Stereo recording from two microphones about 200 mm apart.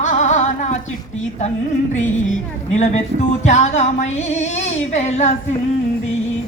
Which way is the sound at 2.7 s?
35° left (ahead or behind).